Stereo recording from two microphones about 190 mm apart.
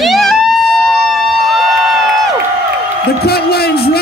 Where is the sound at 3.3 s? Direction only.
55° left (ahead or behind).